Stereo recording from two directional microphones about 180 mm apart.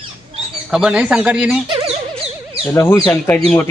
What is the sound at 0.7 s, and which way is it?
Speech, 5° right (ahead or behind).